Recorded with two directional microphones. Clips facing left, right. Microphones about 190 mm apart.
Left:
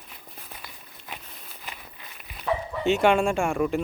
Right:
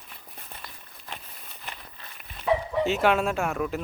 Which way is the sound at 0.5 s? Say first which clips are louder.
Even; 5° left (ahead or behind).